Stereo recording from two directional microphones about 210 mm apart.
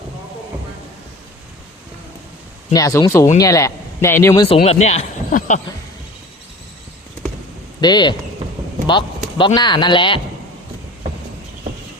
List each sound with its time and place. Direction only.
2.7 s a man's voice: 15° left (ahead or behind)
4.4 s speech: 30° left (ahead or behind)
7.8 s speech: 20° left (ahead or behind)
8.9 s chop: 20° left (ahead or behind)
9.6 s speech: 20° left (ahead or behind)